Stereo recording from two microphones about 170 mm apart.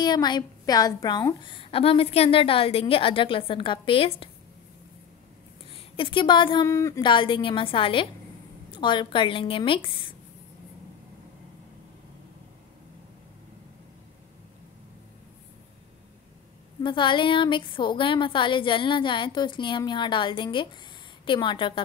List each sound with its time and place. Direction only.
0.0 s a woman's voice: 25° left (ahead or behind)
5.7 s speech: 30° left (ahead or behind)
6.7 s a woman's voice: 15° left (ahead or behind)
16.8 s a woman's voice: 30° left (ahead or behind)